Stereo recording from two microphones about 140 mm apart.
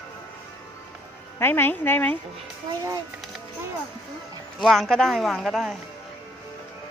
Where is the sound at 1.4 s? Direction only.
15° left (ahead or behind).